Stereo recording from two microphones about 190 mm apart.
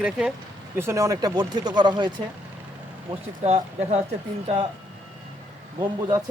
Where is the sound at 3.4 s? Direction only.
35° right (ahead or behind).